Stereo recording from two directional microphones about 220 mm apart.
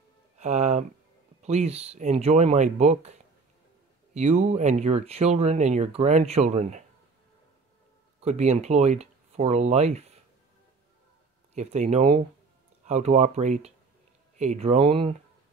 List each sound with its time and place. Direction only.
0.4 s speech: 30° right (ahead or behind)
8.2 s speech: 30° right (ahead or behind)
11.5 s speech: 30° right (ahead or behind)